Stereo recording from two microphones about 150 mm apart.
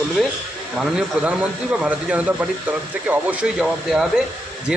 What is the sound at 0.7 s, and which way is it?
A man's voice, 5° right (ahead or behind).